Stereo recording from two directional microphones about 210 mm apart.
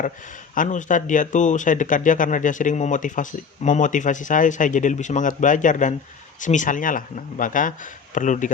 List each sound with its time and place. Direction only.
0.5 s speech: 40° left (ahead or behind)